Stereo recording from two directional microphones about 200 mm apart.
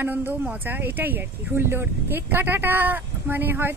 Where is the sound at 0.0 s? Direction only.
10° right (ahead or behind).